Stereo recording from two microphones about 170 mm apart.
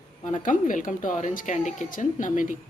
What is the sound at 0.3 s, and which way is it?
Speech, 50° left (ahead or behind).